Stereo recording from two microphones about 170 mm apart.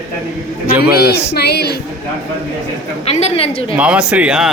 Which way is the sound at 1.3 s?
75° left (ahead or behind).